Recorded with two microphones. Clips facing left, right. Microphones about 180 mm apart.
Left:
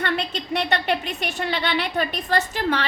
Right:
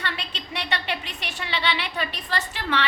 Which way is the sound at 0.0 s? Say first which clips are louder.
Left 8 dB; 50° left (ahead or behind).